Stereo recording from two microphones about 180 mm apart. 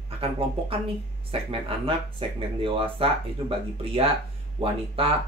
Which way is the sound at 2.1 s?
30° right (ahead or behind).